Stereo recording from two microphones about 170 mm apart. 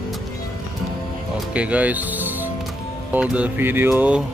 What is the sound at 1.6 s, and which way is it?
Speech, 10° right (ahead or behind).